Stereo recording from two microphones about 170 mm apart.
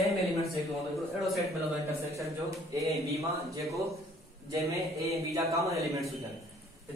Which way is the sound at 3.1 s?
20° right (ahead or behind).